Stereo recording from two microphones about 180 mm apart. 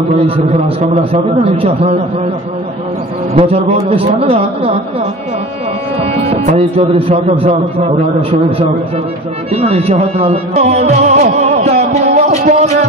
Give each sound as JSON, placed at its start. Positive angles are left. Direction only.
{"t": 1.4, "sound": "speech", "side_deg": -35}
{"t": 3.3, "sound": "speech", "side_deg": -35}
{"t": 5.9, "sound": "speech", "side_deg": -35}